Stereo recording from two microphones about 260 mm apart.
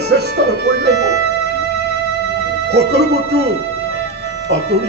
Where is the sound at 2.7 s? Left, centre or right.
Right.